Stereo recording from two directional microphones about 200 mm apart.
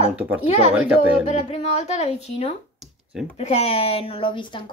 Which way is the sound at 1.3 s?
35° left (ahead or behind).